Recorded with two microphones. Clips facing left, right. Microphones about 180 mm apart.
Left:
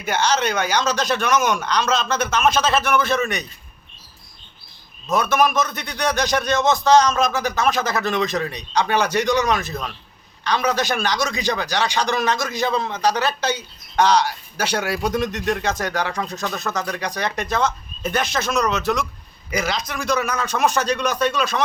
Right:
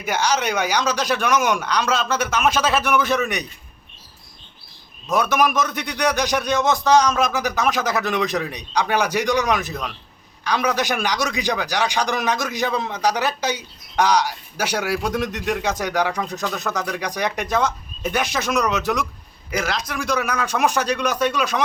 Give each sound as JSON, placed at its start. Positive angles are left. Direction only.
{"t": 0.0, "sound": "a man's voice", "side_deg": -10}
{"t": 5.1, "sound": "a man's voice", "side_deg": -10}